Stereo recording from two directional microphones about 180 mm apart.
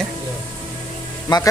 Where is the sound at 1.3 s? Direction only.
25° left (ahead or behind).